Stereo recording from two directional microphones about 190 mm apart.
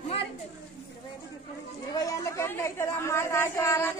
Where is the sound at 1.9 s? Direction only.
20° left (ahead or behind).